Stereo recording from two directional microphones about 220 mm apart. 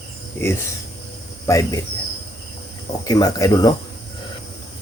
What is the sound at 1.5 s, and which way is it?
Speech, 15° left (ahead or behind).